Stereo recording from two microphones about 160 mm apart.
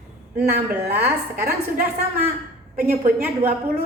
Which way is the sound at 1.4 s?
70° right (ahead or behind).